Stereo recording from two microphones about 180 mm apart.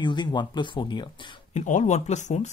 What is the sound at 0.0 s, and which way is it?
Speech, 25° left (ahead or behind).